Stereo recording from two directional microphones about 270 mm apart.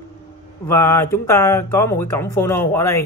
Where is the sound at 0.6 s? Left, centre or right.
Centre.